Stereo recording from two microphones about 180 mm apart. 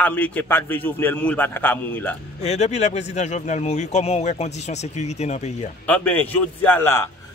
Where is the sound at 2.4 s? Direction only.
40° left (ahead or behind).